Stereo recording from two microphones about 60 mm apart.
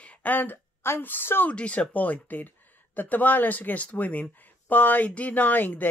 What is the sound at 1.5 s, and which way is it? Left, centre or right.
Speech, left.